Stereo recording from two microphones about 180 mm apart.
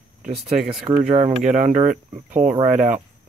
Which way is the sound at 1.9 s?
10° right (ahead or behind).